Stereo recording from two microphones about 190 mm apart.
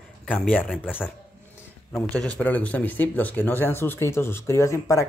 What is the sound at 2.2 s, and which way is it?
Speech, 5° left (ahead or behind).